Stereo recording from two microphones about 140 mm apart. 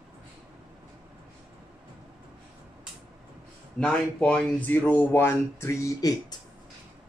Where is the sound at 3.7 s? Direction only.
5° left (ahead or behind); by 6.1 s 25° left (ahead or behind).